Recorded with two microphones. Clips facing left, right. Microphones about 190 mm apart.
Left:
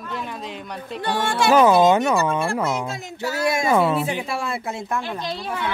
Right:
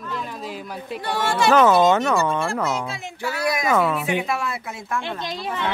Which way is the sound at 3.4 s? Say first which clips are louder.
Left 2 dB; 25° left (ahead or behind).